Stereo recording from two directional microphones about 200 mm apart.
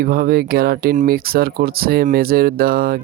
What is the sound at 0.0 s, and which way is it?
Speech, 50° right (ahead or behind).